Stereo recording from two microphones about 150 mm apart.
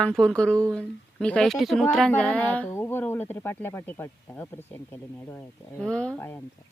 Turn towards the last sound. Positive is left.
turn(degrees=15)  # may be behind; listen again after turning